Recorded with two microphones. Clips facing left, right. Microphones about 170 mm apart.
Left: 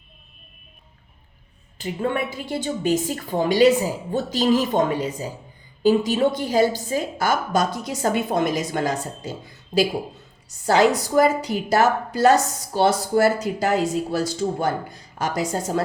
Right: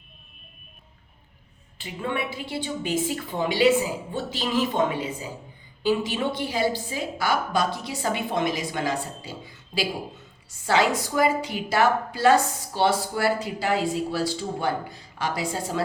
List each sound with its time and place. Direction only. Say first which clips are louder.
1.8 s a woman's voice: left 5 dB; 45° left (ahead or behind)